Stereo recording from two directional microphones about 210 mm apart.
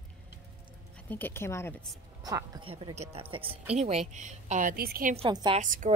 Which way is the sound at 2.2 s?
20° right (ahead or behind).